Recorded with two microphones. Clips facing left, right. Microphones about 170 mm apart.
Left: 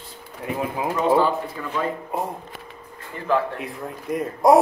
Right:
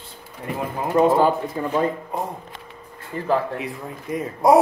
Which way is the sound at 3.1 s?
35° right (ahead or behind).